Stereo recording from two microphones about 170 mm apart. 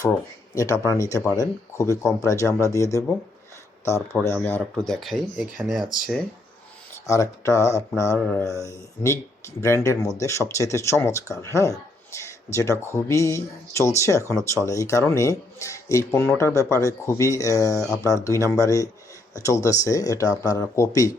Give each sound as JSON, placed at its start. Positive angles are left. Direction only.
{"t": 0.5, "sound": "speech", "side_deg": 20}
{"t": 7.1, "sound": "speech", "side_deg": 20}